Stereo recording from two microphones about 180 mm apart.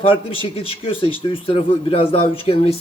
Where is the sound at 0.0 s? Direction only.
30° left (ahead or behind).